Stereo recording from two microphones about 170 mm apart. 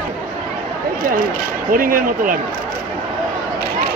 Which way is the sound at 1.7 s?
55° right (ahead or behind).